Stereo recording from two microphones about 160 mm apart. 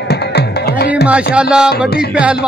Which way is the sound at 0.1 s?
90° left.